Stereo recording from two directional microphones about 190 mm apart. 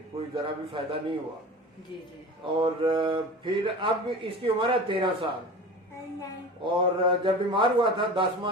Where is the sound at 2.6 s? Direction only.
25° right (ahead or behind).